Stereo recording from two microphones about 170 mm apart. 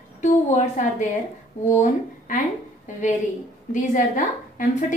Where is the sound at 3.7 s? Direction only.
50° left (ahead or behind).